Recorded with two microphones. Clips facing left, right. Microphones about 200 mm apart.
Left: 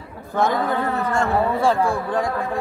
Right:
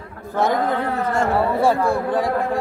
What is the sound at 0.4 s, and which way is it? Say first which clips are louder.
Speech: right 1 dB; 45° right (ahead or behind).